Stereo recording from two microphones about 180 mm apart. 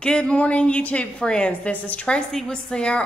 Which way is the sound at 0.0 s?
5° left (ahead or behind).